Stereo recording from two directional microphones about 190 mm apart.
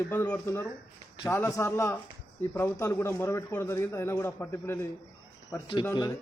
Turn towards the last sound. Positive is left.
turn(degrees=25)  # may be behind; listen again after turning